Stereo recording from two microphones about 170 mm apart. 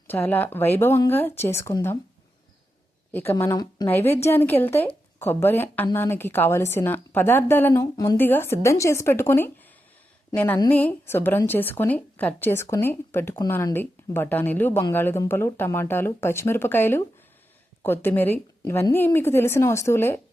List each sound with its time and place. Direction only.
0.1 s speech: 10° left (ahead or behind)
3.1 s speech: 10° left (ahead or behind)